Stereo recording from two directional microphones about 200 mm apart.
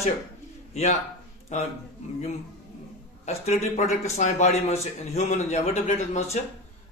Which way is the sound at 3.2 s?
35° left (ahead or behind).